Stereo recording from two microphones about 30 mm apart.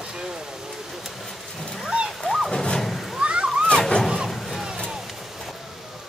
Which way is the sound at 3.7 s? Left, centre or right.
Left.